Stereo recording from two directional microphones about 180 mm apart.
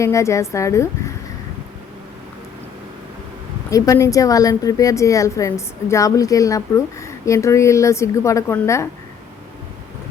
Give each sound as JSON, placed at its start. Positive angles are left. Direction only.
{"t": 0.0, "sound": "a woman's voice", "side_deg": 15}
{"t": 3.7, "sound": "a woman's voice", "side_deg": 20}